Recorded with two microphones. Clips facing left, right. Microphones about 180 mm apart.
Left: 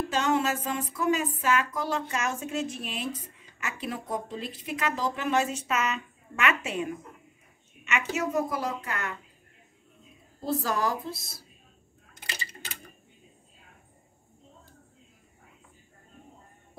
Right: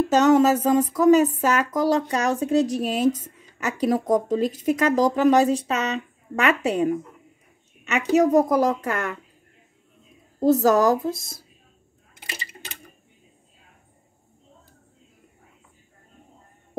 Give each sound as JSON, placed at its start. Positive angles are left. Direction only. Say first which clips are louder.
{"t": 0.1, "sound": "speech", "louder": "right 11 dB", "side_deg": -40}
{"t": 10.4, "sound": "a woman's voice", "louder": "right 11 dB", "side_deg": -45}